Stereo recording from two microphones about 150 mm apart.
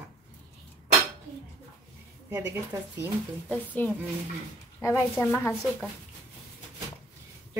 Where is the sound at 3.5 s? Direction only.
10° left (ahead or behind).